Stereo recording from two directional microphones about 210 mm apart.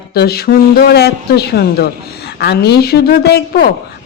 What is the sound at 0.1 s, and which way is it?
A man's voice, 50° left (ahead or behind).